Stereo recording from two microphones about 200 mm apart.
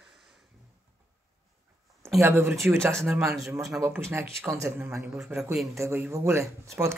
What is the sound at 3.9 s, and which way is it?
Speech, 15° right (ahead or behind).